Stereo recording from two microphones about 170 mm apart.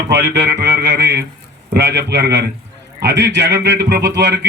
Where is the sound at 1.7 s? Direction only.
75° right (ahead or behind).